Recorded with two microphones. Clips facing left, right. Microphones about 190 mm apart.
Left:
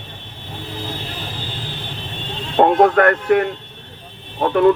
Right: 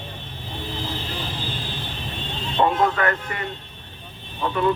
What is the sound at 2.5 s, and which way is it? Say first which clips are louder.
Speech: left 8 dB; 60° left (ahead or behind).